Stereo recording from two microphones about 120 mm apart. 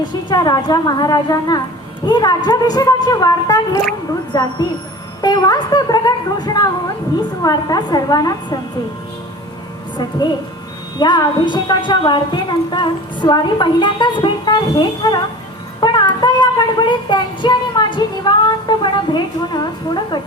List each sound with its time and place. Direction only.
0.0 s a woman's voice: 35° left (ahead or behind)
10.9 s a woman's voice: 35° left (ahead or behind)
15.8 s child singing: 40° left (ahead or behind)